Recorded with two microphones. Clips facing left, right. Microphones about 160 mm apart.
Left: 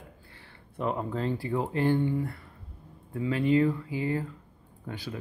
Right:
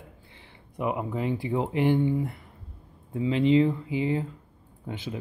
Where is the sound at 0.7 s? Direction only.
10° right (ahead or behind).